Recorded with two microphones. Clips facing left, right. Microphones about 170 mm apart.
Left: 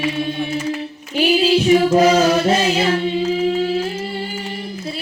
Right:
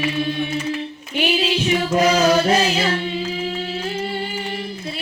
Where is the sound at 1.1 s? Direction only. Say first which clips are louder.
Left 5 dB; 35° left (ahead or behind).